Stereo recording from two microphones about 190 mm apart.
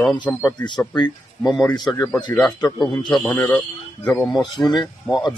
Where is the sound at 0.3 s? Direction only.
15° left (ahead or behind).